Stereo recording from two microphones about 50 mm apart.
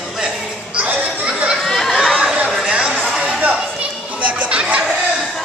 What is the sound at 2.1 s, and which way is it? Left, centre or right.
Chatter, centre.